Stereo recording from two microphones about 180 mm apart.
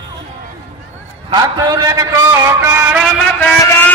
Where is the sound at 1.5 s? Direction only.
20° right (ahead or behind).